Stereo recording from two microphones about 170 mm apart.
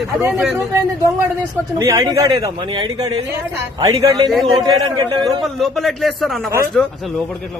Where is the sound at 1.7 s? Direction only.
20° right (ahead or behind).